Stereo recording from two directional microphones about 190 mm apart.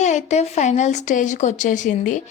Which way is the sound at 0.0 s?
40° left (ahead or behind).